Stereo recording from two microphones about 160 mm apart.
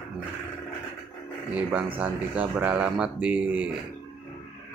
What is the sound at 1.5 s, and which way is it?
Speech, 10° right (ahead or behind).